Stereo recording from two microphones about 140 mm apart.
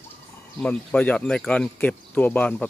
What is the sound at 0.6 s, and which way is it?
Speech, 5° left (ahead or behind).